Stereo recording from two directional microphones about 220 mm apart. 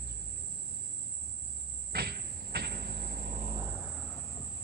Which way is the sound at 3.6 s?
10° right (ahead or behind).